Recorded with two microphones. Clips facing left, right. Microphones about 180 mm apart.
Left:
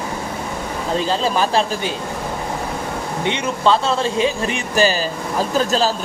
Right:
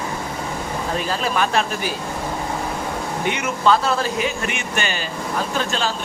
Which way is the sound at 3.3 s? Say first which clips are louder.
Left 1 dB; 25° left (ahead or behind).